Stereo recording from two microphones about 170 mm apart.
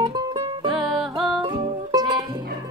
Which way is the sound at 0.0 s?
25° right (ahead or behind).